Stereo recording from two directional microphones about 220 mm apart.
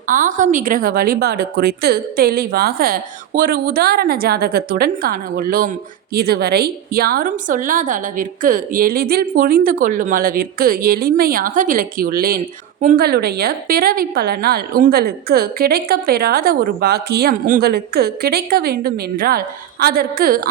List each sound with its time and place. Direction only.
0.1 s a woman's voice: 35° right (ahead or behind)